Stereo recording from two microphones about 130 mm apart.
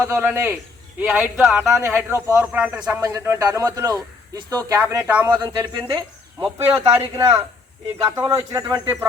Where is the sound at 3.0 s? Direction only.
20° right (ahead or behind).